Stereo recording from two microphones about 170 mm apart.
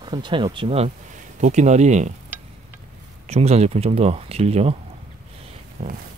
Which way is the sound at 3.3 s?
40° right (ahead or behind).